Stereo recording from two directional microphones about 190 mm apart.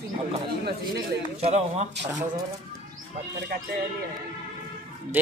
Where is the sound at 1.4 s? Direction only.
35° right (ahead or behind).